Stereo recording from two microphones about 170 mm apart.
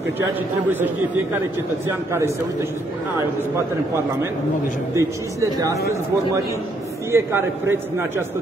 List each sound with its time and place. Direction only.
1.9 s speech: 15° right (ahead or behind)
3.5 s speech: 15° right (ahead or behind)
7.1 s speech: 15° right (ahead or behind)